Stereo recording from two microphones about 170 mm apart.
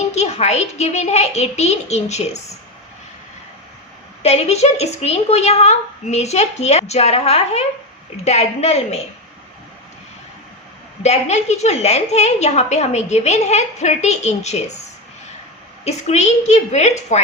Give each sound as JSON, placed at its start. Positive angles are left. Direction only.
{"t": 0.1, "sound": "a woman's voice", "side_deg": 40}
{"t": 4.2, "sound": "a woman's voice", "side_deg": 40}
{"t": 11.0, "sound": "a woman's voice", "side_deg": 40}
{"t": 15.8, "sound": "a woman's voice", "side_deg": 40}